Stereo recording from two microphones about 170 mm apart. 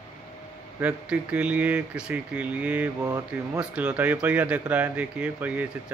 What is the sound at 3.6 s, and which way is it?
Speech, 5° right (ahead or behind).